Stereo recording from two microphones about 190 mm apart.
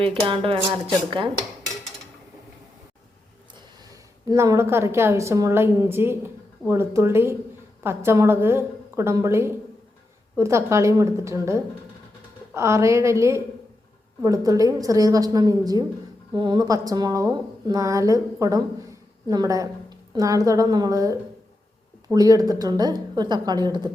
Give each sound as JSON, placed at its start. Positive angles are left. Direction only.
{"t": 0.0, "sound": "a woman's voice", "side_deg": -30}
{"t": 4.3, "sound": "a woman's voice", "side_deg": -15}